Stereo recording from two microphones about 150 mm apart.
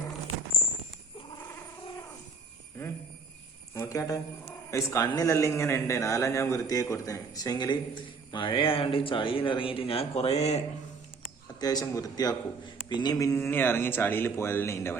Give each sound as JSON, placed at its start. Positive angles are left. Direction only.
{"t": 3.8, "sound": "a man's voice", "side_deg": 20}
{"t": 11.6, "sound": "a man's voice", "side_deg": 25}